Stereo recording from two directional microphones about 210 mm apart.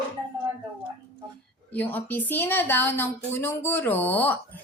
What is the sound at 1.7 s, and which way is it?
A woman's voice, 10° left (ahead or behind).